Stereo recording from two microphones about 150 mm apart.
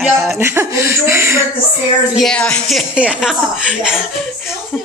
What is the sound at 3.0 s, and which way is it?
Speech, 5° right (ahead or behind).